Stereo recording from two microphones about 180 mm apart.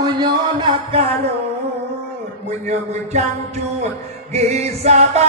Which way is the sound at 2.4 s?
40° right (ahead or behind).